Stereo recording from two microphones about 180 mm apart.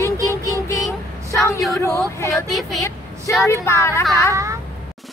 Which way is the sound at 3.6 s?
15° left (ahead or behind).